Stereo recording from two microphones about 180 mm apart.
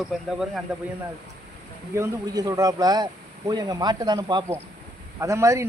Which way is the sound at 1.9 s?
20° right (ahead or behind).